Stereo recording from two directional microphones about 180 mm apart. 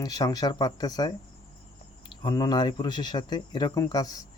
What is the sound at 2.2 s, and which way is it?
Speech, 20° left (ahead or behind).